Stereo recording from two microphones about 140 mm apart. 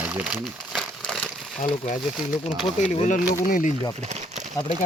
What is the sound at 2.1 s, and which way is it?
Speech, centre (ahead or behind).